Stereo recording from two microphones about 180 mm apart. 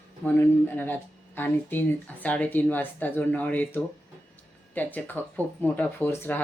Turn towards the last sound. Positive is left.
turn(degrees=15)  # may be behind; listen again after turning